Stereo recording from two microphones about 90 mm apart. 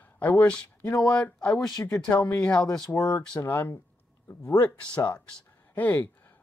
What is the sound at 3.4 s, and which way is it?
Speech, 30° left (ahead or behind).